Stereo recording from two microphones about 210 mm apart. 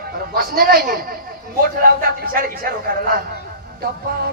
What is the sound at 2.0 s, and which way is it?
Speech, 45° right (ahead or behind).